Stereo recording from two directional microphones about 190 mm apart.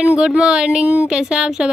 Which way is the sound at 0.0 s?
5° right (ahead or behind).